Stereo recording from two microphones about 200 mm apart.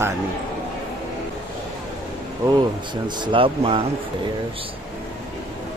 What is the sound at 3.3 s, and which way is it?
Speech, 25° right (ahead or behind).